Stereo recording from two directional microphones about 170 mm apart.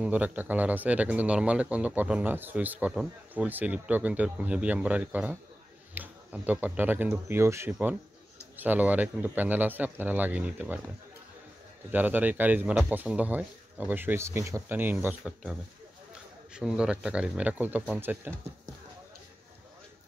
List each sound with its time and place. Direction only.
0.0 s speech: 5° right (ahead or behind)
11.9 s speech: 10° right (ahead or behind)
16.5 s speech: 5° right (ahead or behind)